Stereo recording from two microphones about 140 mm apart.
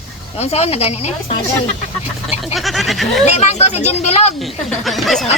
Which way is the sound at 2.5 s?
Centre (ahead or behind).